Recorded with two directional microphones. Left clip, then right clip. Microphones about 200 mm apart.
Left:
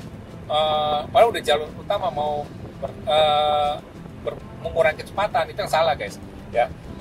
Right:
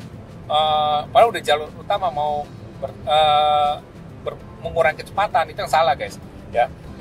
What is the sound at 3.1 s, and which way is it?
Speech, 15° right (ahead or behind).